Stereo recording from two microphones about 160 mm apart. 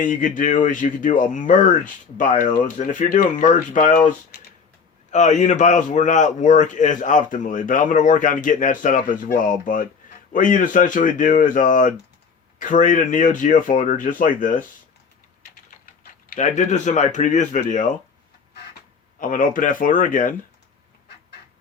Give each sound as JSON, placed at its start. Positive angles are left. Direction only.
{"t": 0.0, "sound": "a man's voice", "side_deg": 55}
{"t": 16.3, "sound": "a man's voice", "side_deg": 50}
{"t": 19.2, "sound": "speech", "side_deg": 55}